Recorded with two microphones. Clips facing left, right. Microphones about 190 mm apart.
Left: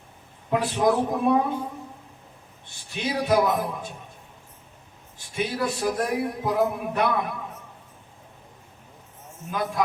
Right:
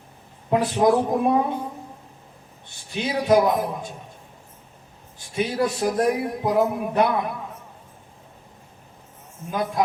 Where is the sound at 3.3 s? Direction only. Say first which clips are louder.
Right 4 dB; 25° right (ahead or behind).